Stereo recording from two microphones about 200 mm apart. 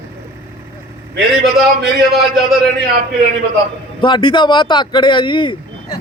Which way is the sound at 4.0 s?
20° left (ahead or behind).